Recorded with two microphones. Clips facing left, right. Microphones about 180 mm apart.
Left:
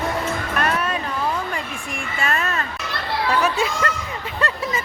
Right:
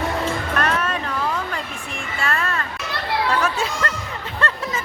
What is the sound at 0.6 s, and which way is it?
Music, 10° left (ahead or behind).